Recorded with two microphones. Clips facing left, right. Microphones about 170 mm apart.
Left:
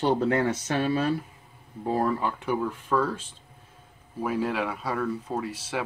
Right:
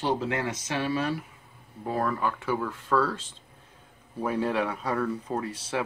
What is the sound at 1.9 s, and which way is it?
Speech, 30° left (ahead or behind).